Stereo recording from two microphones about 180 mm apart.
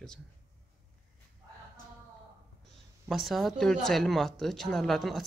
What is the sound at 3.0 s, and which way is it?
Speech, centre (ahead or behind).